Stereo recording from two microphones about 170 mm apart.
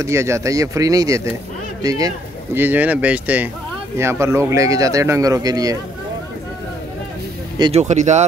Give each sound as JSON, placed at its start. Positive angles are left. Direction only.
{"t": 0.0, "sound": "speech", "side_deg": -15}
{"t": 7.7, "sound": "speech", "side_deg": -45}